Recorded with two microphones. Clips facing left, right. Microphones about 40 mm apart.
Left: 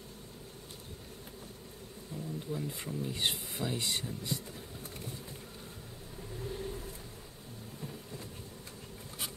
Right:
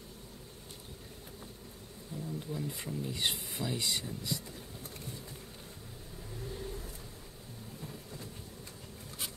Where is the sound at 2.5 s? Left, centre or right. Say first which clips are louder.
Left 2 dB; centre.